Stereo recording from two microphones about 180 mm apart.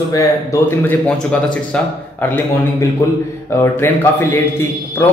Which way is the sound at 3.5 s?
15° left (ahead or behind).